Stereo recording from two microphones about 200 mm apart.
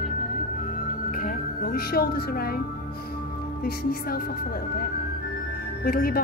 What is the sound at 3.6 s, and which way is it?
Music, 50° left (ahead or behind).